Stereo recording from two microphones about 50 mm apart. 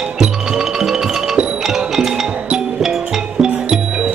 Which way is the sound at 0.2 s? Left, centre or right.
Centre.